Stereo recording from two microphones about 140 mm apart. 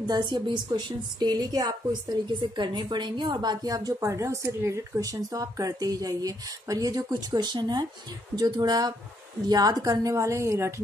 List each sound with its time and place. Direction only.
0.0 s a woman's voice: 30° right (ahead or behind)